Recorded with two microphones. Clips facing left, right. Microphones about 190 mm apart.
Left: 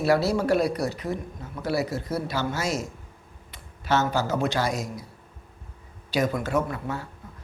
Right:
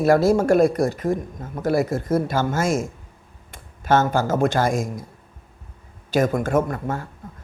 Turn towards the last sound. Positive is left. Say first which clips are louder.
# right 6 dB
turn(degrees=-45)  # may be behind; listen again after turning